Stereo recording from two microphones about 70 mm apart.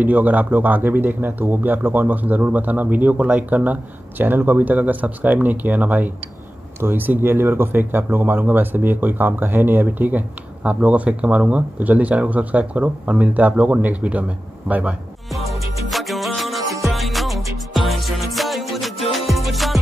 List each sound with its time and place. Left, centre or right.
0.0 s speech: right
15.3 s music: centre